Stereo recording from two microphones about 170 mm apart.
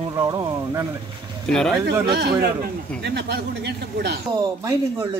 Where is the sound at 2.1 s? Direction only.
70° right (ahead or behind).